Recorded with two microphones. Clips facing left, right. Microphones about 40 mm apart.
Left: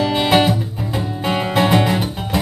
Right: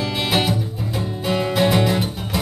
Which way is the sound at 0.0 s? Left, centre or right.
Centre.